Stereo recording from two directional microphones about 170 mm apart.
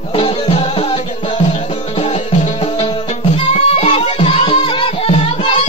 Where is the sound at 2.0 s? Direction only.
40° left (ahead or behind).